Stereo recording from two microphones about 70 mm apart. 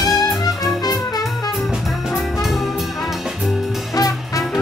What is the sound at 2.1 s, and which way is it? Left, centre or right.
Music, centre.